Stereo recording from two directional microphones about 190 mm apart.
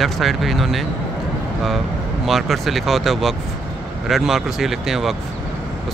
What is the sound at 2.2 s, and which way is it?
Speech, centre (ahead or behind).